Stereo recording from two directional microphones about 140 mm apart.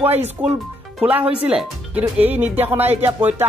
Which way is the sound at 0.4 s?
10° right (ahead or behind).